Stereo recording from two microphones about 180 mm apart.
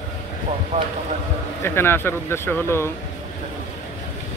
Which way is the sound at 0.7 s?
30° right (ahead or behind).